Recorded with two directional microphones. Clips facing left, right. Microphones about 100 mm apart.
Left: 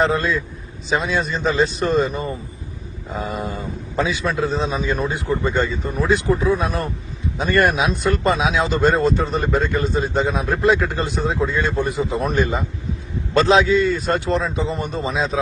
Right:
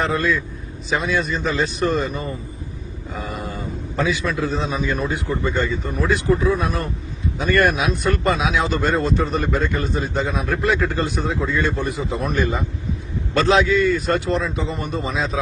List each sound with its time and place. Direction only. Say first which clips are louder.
0.0 s a man's voice: left 2 dB; 30° left (ahead or behind)